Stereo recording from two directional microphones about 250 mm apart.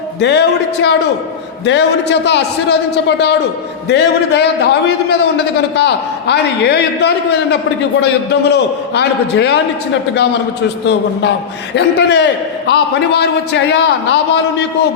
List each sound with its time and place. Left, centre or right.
0.2 s a man's voice: left
10.8 s a man's voice: left